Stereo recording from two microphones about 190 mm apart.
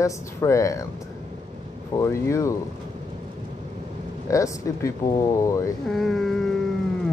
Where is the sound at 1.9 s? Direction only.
15° left (ahead or behind).